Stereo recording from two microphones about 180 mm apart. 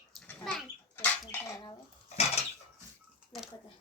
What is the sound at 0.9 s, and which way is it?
Rodents, 10° left (ahead or behind).